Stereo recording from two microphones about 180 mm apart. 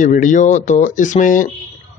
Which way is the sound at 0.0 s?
45° left (ahead or behind).